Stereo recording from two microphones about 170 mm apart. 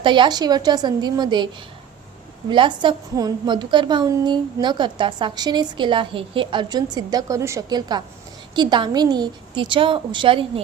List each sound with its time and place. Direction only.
0.0 s a woman's voice: 30° right (ahead or behind)
2.5 s a woman's voice: 30° right (ahead or behind)